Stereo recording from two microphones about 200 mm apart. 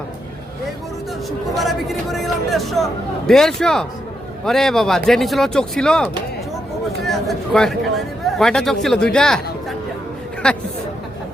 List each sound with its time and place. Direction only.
1.5 s speech: centre (ahead or behind)